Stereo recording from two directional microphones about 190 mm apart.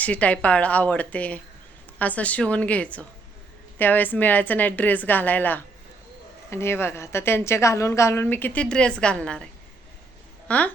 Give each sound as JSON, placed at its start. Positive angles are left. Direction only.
{"t": 0.0, "sound": "a woman's voice", "side_deg": 5}
{"t": 10.5, "sound": "a woman's voice", "side_deg": 5}